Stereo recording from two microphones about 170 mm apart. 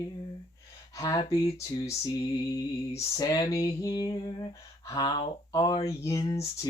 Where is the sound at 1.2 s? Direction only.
35° left (ahead or behind).